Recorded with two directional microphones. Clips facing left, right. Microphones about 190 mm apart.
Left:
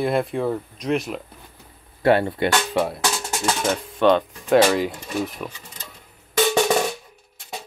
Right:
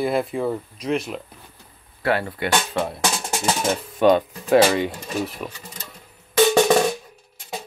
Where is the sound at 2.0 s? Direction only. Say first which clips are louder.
Left 5 dB; 25° left (ahead or behind).